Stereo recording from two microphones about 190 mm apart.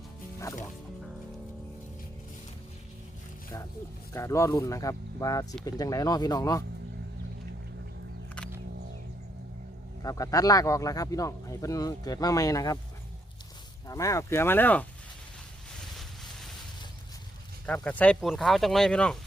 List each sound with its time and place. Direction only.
0.3 s speech: 15° left (ahead or behind)
4.1 s speech: 15° left (ahead or behind)
10.0 s speech: 20° left (ahead or behind)
13.8 s speech: 15° left (ahead or behind)
17.7 s speech: 5° left (ahead or behind)